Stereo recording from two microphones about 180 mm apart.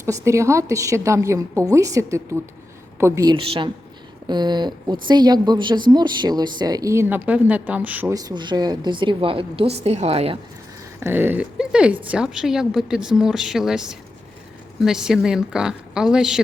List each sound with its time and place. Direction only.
0.0 s a woman's voice: 15° right (ahead or behind)
3.3 s a woman's voice: 30° right (ahead or behind); by 8.1 s 10° right (ahead or behind)
8.1 s a woman's voice: 25° right (ahead or behind)
11.0 s a woman's voice: 10° right (ahead or behind)